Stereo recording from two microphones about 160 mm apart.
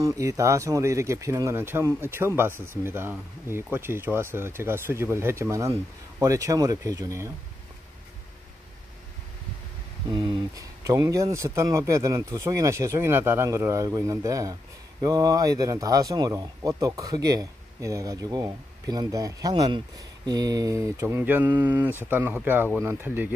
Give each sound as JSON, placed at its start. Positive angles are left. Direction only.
{"t": 0.0, "sound": "speech", "side_deg": -20}
{"t": 10.1, "sound": "speech", "side_deg": -25}